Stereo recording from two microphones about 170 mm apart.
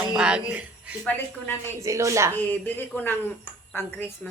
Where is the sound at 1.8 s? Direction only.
20° right (ahead or behind).